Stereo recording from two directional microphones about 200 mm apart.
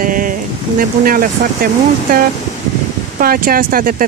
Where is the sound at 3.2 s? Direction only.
45° right (ahead or behind).